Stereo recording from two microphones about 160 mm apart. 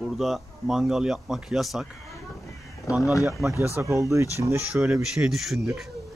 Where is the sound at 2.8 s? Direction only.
Centre (ahead or behind).